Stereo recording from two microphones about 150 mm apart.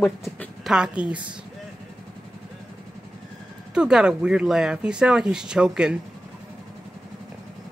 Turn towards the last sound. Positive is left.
turn(degrees=-5)  # may be behind; listen again after turning